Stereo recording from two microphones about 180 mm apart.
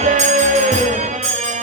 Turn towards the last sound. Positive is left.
turn(degrees=-40)  # may be behind; listen again after turning